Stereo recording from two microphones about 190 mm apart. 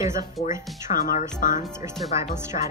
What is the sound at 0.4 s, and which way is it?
Speech, 40° left (ahead or behind).